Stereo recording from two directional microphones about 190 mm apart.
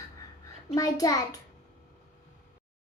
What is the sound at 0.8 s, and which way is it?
Speech, 20° left (ahead or behind).